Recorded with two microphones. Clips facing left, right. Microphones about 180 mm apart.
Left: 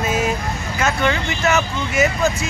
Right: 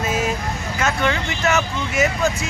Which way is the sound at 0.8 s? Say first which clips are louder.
Left 2 dB; 5° left (ahead or behind).